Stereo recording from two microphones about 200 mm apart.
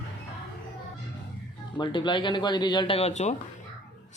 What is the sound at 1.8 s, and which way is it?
Speech, 25° left (ahead or behind).